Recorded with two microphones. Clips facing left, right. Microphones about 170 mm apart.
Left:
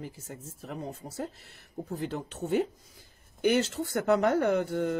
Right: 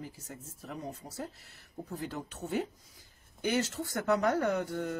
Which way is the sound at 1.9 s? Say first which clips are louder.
Left 4 dB; 25° left (ahead or behind).